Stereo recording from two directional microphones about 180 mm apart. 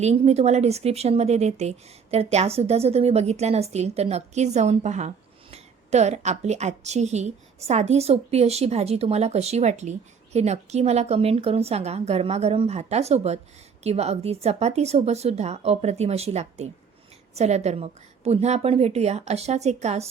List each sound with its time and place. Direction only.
0.0 s speech: 35° right (ahead or behind)